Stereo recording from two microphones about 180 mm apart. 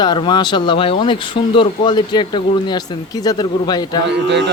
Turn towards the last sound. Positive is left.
turn(degrees=-70)  # may be behind; listen again after turning